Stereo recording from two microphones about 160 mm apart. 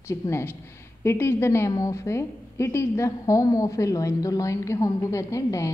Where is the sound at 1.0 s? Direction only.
15° left (ahead or behind).